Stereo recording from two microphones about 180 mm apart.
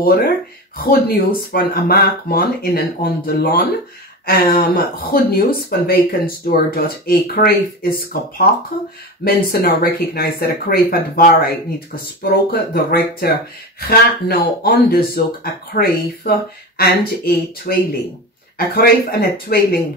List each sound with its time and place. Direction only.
0.0 s speech: 55° left (ahead or behind)